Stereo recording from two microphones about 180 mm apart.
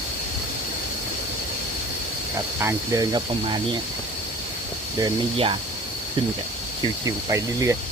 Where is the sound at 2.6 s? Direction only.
20° right (ahead or behind).